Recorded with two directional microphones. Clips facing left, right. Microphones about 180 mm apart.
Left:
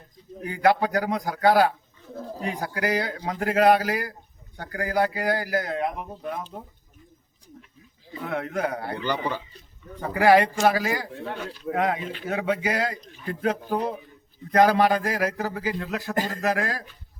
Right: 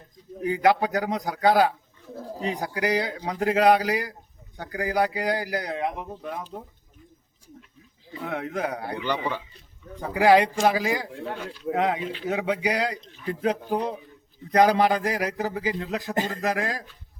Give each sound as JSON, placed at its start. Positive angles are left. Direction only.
{"t": 0.4, "sound": "a man's voice", "side_deg": -20}
{"t": 8.3, "sound": "a man's voice", "side_deg": -20}
{"t": 9.0, "sound": "speech", "side_deg": 0}
{"t": 10.0, "sound": "a man's voice", "side_deg": -15}